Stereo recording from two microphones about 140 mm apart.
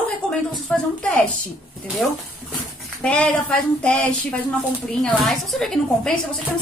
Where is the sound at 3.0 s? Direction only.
10° left (ahead or behind).